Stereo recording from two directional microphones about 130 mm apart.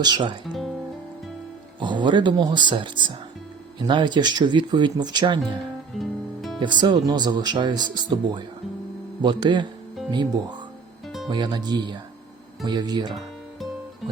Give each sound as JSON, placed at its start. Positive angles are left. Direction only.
{"t": 0.0, "sound": "speech", "side_deg": -35}
{"t": 0.5, "sound": "music", "side_deg": 0}
{"t": 1.8, "sound": "speech", "side_deg": -35}
{"t": 6.0, "sound": "music", "side_deg": 0}
{"t": 6.6, "sound": "speech", "side_deg": -35}
{"t": 11.3, "sound": "speech", "side_deg": -35}